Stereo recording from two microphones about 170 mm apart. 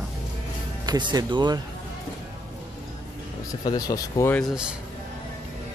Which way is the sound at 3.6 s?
20° left (ahead or behind).